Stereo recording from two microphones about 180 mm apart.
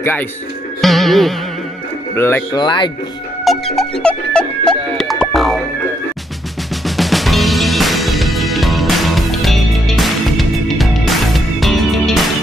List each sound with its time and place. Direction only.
0.0 s speech: 10° left (ahead or behind)
0.7 s music: centre (ahead or behind)
2.1 s speech: 15° left (ahead or behind)
3.4 s music: centre (ahead or behind)
7.0 s music: centre (ahead or behind)